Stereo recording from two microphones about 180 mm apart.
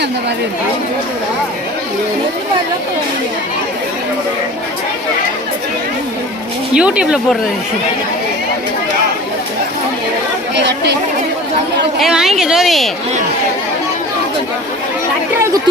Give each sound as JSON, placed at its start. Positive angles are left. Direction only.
{"t": 6.7, "sound": "speech", "side_deg": -5}
{"t": 10.5, "sound": "speech", "side_deg": -75}
{"t": 12.0, "sound": "speech", "side_deg": 0}